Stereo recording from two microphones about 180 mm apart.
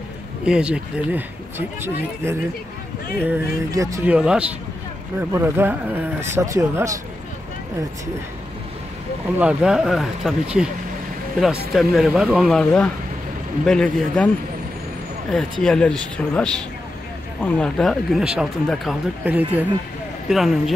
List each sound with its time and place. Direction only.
0.5 s speech: 5° right (ahead or behind)
2.2 s speech: 15° right (ahead or behind)
4.1 s speech: 5° right (ahead or behind)
9.4 s speech: 5° right (ahead or behind)
11.7 s speech: centre (ahead or behind)
15.6 s speech: 5° left (ahead or behind)